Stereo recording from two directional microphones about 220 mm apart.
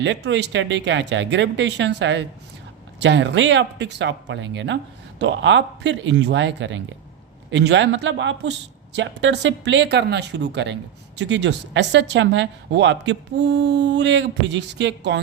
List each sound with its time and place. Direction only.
0.0 s speech: 55° right (ahead or behind)